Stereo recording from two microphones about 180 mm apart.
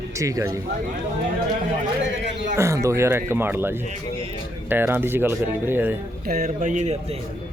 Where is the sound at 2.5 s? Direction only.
15° right (ahead or behind).